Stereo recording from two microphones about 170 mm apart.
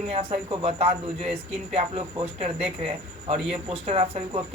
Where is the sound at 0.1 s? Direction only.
35° right (ahead or behind).